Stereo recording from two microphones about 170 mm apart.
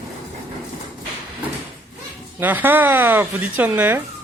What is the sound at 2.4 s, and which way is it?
Speech, 10° right (ahead or behind).